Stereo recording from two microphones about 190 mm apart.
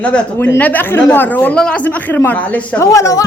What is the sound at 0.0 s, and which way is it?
Speech, 5° left (ahead or behind).